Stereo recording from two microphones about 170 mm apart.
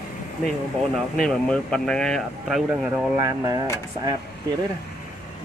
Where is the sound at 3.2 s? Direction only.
20° right (ahead or behind).